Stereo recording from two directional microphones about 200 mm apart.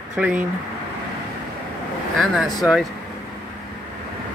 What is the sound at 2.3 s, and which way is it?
Speech, centre (ahead or behind).